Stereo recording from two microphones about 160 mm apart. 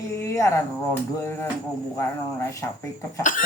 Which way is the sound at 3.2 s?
55° left (ahead or behind).